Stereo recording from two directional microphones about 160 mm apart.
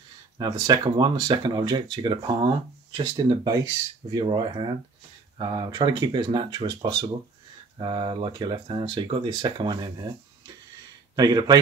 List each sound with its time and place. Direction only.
0.4 s speech: 25° right (ahead or behind)